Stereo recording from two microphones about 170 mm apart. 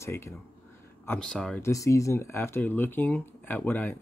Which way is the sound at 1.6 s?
20° left (ahead or behind).